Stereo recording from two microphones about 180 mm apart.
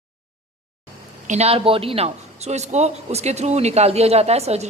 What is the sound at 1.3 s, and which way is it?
A man's voice, 35° right (ahead or behind).